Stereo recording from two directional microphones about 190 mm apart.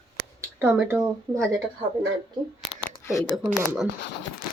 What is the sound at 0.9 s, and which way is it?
Speech, 15° right (ahead or behind).